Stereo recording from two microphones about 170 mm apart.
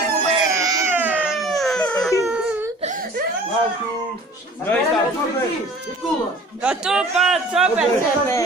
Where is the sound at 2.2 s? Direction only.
5° right (ahead or behind).